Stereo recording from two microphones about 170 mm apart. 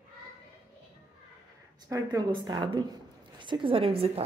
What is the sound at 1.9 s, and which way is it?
A woman's voice, 20° right (ahead or behind).